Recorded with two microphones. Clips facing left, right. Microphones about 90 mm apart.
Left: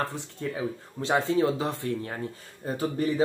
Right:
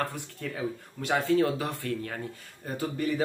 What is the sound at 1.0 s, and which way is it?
A man's voice, 25° left (ahead or behind).